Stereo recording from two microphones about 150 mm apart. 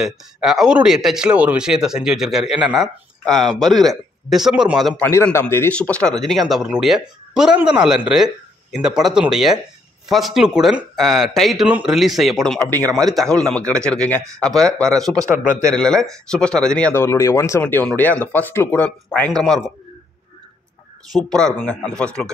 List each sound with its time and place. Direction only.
0.0 s speech: 5° right (ahead or behind)
5.1 s speech: 15° left (ahead or behind)
15.3 s speech: 60° left (ahead or behind)
15.7 s speech: 5° left (ahead or behind)
21.1 s speech: 5° left (ahead or behind)